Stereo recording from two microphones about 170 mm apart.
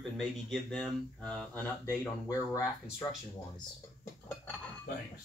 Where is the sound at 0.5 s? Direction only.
5° left (ahead or behind).